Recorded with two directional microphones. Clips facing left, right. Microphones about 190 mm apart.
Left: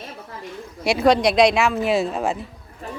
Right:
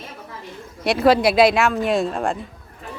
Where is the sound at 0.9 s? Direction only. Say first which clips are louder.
Right 1 dB; centre (ahead or behind).